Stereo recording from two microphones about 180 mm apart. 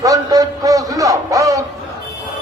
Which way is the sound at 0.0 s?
20° right (ahead or behind).